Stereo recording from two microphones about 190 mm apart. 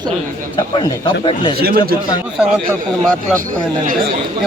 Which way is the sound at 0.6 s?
25° left (ahead or behind).